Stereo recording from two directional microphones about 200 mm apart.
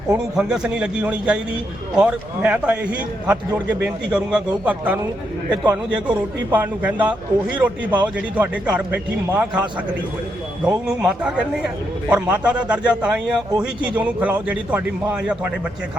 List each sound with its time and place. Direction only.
0.3 s a man's voice: 5° right (ahead or behind)
10.8 s a man's voice: 5° right (ahead or behind)